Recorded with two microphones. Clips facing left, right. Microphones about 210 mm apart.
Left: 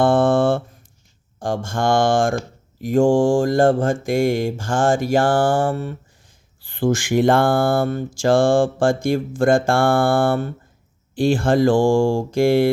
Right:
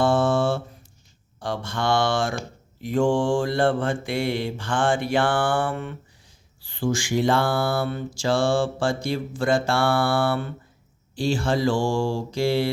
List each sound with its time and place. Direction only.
0.0 s a sound: 55° left (ahead or behind)
1.4 s mantra: 45° left (ahead or behind)
6.6 s mantra: 55° left (ahead or behind)